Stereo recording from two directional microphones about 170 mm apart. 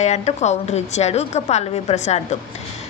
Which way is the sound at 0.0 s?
40° left (ahead or behind).